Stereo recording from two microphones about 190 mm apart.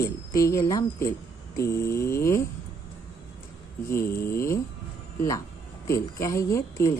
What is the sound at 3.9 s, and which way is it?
Speech, 15° left (ahead or behind).